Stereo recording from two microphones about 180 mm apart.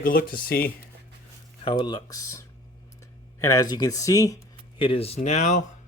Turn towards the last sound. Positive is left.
turn(degrees=40)  # may be behind; listen again after turning